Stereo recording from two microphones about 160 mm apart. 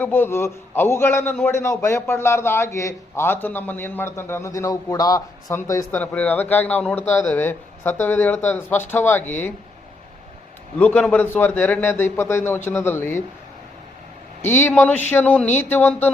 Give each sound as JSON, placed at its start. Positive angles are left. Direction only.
{"t": 0.0, "sound": "a man's voice", "side_deg": 15}
{"t": 10.8, "sound": "a man's voice", "side_deg": 10}
{"t": 14.7, "sound": "a man's voice", "side_deg": 10}